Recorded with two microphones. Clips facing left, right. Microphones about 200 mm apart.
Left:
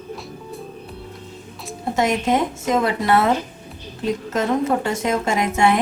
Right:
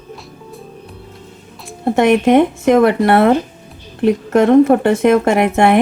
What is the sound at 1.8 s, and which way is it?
A woman's voice, 60° right (ahead or behind).